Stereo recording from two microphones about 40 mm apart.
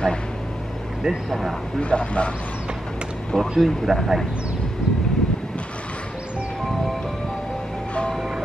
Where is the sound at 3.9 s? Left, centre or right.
Centre.